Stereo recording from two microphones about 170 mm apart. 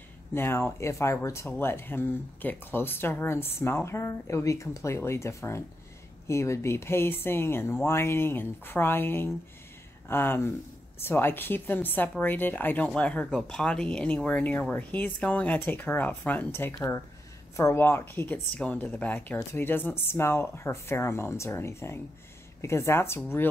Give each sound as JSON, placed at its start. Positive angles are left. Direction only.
{"t": 0.3, "sound": "a woman's voice", "side_deg": 15}